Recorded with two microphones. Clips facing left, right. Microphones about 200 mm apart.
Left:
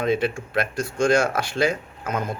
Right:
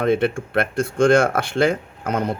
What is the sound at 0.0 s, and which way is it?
Speech, 55° right (ahead or behind).